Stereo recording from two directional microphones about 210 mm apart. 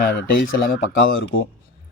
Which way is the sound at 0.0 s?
45° left (ahead or behind).